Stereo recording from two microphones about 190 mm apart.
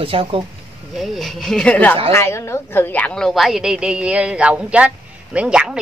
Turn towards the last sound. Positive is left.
turn(degrees=-5)  # may be behind; listen again after turning